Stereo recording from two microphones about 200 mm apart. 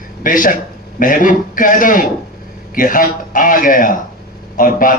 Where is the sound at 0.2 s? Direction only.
40° left (ahead or behind).